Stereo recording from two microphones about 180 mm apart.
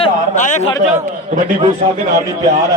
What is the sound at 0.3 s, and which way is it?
Speech, 40° left (ahead or behind).